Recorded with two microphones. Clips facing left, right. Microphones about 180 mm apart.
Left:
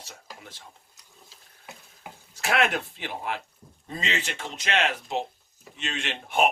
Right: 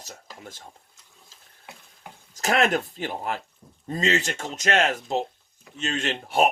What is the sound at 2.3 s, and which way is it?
Speech, 40° right (ahead or behind).